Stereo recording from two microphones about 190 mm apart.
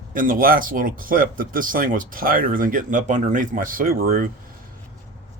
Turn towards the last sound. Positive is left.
turn(degrees=-50)  # may be behind; listen again after turning